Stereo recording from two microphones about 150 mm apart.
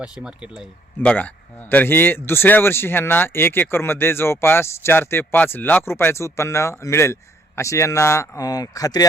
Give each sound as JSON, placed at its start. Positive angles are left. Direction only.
{"t": 0.0, "sound": "speech", "side_deg": -5}
{"t": 1.0, "sound": "speech", "side_deg": 10}